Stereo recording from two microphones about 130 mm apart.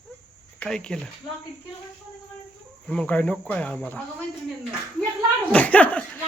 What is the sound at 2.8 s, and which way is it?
Speech, 5° left (ahead or behind).